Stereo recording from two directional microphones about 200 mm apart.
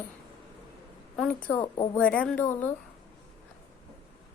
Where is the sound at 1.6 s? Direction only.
25° left (ahead or behind).